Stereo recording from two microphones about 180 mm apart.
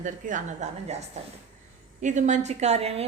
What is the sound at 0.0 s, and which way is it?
A woman's voice, 45° right (ahead or behind).